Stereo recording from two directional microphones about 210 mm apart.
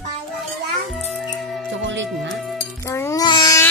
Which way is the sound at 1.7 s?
60° right (ahead or behind).